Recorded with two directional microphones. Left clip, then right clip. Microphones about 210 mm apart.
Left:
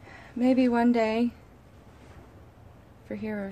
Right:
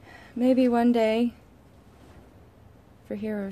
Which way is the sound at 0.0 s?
15° right (ahead or behind).